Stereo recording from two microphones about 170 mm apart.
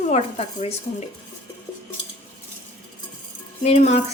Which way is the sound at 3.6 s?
45° left (ahead or behind).